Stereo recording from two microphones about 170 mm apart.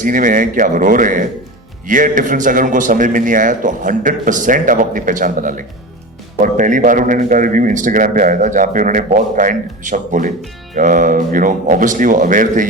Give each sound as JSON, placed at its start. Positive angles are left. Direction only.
{"t": 0.0, "sound": "a man's voice", "side_deg": -50}